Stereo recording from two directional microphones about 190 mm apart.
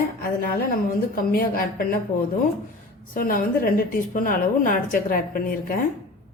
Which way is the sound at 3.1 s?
50° left (ahead or behind).